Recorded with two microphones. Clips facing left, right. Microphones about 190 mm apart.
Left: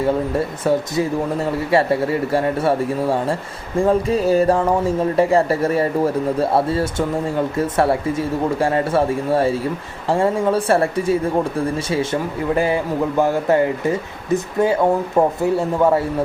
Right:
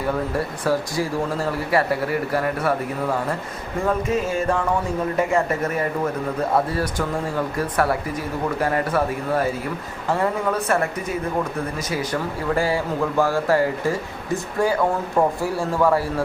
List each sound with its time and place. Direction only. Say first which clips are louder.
0.0 s speech: left 5 dB; 25° left (ahead or behind)
3.8 s a sound: left 5 dB; 35° left (ahead or behind)
6.5 s speech: left 3 dB; 25° left (ahead or behind)